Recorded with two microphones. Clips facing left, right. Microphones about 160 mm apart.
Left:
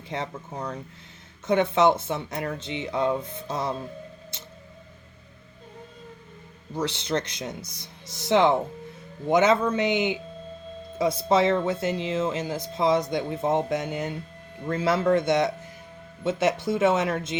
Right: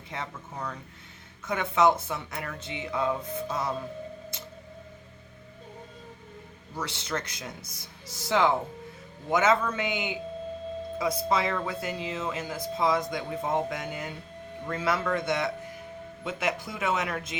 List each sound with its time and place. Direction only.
0.1 s speech: 25° left (ahead or behind)
6.7 s speech: 20° left (ahead or behind)
16.7 s speech: 25° left (ahead or behind)